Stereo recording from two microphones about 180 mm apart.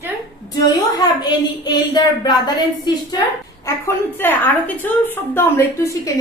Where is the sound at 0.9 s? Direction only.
25° left (ahead or behind).